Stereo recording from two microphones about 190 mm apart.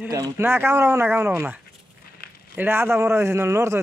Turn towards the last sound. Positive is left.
turn(degrees=-15)  # may be behind; listen again after turning